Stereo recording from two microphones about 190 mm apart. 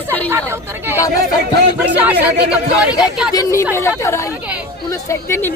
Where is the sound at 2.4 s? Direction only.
60° right (ahead or behind).